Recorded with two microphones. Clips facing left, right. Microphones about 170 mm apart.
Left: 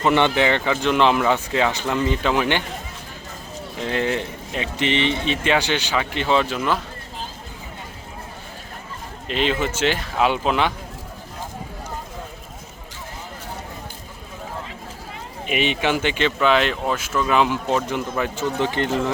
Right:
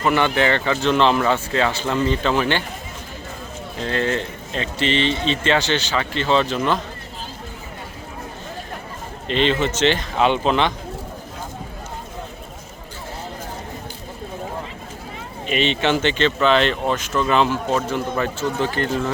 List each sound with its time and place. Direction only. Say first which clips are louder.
0.0 s speech: left 1 dB; 20° left (ahead or behind)
3.8 s speech: right 1 dB; 15° left (ahead or behind)
9.2 s speech: right 3 dB; 5° left (ahead or behind)
15.4 s speech: right 2 dB; 10° left (ahead or behind)